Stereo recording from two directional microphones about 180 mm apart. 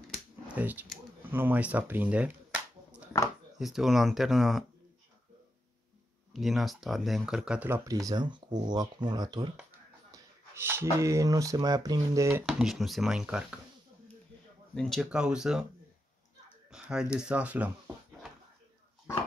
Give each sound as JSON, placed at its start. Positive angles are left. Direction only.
{"t": 0.5, "sound": "speech", "side_deg": -10}
{"t": 6.3, "sound": "speech", "side_deg": 0}
{"t": 12.4, "sound": "speech", "side_deg": 0}
{"t": 14.8, "sound": "speech", "side_deg": 0}
{"t": 16.7, "sound": "speech", "side_deg": -5}